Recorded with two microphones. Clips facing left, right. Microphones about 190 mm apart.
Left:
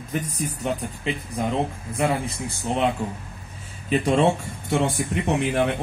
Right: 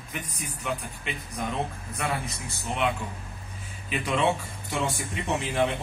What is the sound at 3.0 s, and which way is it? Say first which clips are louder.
A man's voice: left 7 dB; 35° left (ahead or behind).